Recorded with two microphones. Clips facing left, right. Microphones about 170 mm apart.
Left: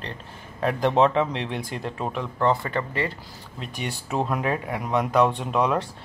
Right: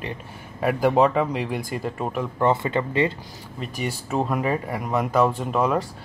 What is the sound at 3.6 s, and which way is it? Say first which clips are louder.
Speech: right 3 dB; centre (ahead or behind).